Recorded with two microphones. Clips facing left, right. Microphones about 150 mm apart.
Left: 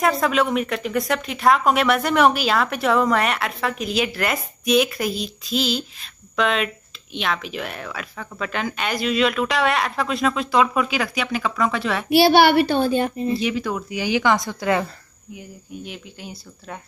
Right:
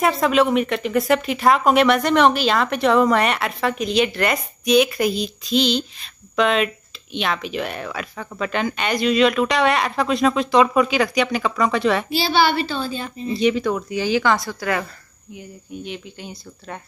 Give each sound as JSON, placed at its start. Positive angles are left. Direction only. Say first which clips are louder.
{"t": 0.0, "sound": "speech", "louder": "right 2 dB", "side_deg": 0}
{"t": 12.1, "sound": "a woman's voice", "louder": "left 5 dB", "side_deg": 65}
{"t": 13.4, "sound": "speech", "louder": "right 5 dB", "side_deg": 5}
{"t": 15.3, "sound": "speech", "louder": "right 2 dB", "side_deg": 5}